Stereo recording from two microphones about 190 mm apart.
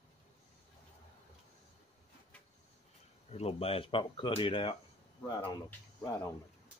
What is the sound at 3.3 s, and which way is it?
Speech, 35° left (ahead or behind).